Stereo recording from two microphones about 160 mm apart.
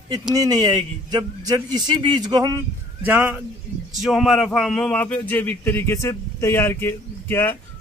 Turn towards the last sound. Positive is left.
turn(degrees=15)  # may be behind; listen again after turning